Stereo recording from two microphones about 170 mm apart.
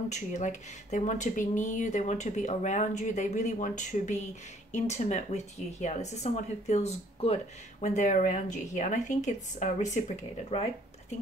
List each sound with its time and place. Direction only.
0.1 s speech: 45° left (ahead or behind)